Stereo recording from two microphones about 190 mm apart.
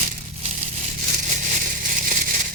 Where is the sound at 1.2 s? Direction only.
40° right (ahead or behind).